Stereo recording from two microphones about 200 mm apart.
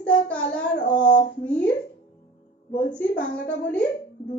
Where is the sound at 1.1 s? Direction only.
40° left (ahead or behind).